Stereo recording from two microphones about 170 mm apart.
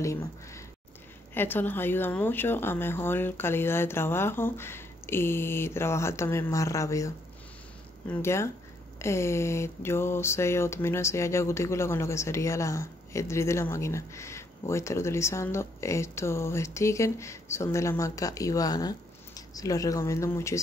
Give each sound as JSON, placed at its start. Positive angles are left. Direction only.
{"t": 0.0, "sound": "speech", "side_deg": 15}
{"t": 8.1, "sound": "speech", "side_deg": 15}